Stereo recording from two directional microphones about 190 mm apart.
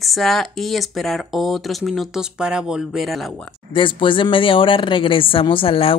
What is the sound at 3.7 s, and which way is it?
A woman's voice, 25° left (ahead or behind).